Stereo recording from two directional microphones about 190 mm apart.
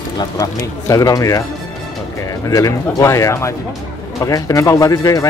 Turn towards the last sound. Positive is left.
turn(degrees=20)  # may be behind; listen again after turning